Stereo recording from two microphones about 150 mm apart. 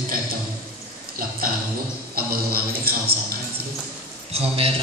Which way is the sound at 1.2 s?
70° right (ahead or behind).